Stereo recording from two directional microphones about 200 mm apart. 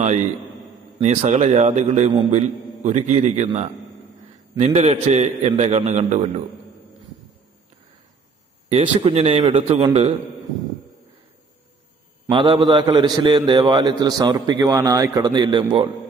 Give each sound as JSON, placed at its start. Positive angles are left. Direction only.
{"t": 0.9, "sound": "a man's voice", "side_deg": -30}
{"t": 8.6, "sound": "a man's voice", "side_deg": -25}
{"t": 12.3, "sound": "a man's voice", "side_deg": -25}